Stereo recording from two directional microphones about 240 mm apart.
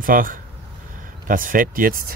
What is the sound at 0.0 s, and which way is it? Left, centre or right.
Speech, right.